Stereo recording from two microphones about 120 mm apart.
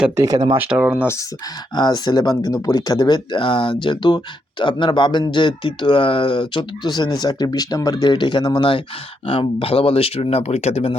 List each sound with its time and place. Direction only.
0.2 s speech: 30° right (ahead or behind)
0.5 s speech: 10° right (ahead or behind)
0.9 s speech: 20° left (ahead or behind)
1.7 s speech: 40° left (ahead or behind); by 10.9 s 60° left (ahead or behind)